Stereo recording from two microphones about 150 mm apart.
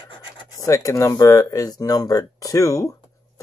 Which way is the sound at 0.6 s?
20° left (ahead or behind).